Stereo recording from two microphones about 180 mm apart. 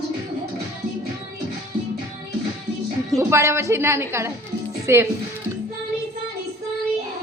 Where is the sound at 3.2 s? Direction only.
15° right (ahead or behind).